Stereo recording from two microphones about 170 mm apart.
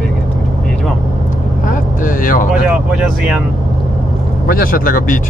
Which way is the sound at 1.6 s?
55° left (ahead or behind).